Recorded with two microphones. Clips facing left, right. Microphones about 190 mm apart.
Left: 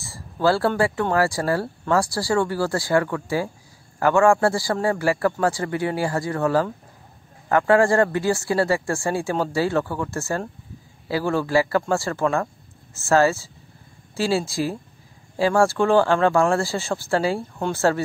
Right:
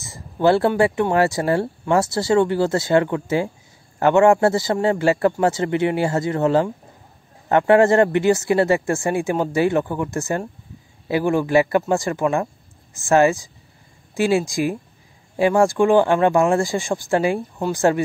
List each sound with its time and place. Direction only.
0.0 s speech: 20° right (ahead or behind)